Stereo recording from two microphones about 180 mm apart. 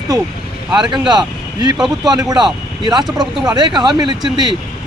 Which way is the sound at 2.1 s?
20° right (ahead or behind).